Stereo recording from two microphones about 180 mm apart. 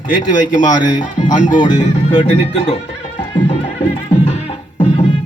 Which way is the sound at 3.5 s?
40° left (ahead or behind).